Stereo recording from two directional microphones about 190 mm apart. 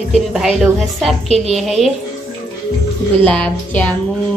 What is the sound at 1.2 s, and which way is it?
Speech, 35° right (ahead or behind).